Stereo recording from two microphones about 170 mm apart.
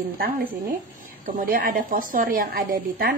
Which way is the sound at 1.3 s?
55° right (ahead or behind).